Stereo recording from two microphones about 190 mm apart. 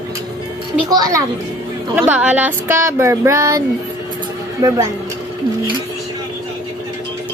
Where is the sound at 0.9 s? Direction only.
20° right (ahead or behind).